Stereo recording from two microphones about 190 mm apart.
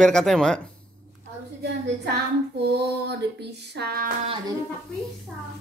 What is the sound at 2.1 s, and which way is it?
Child singing, 60° right (ahead or behind).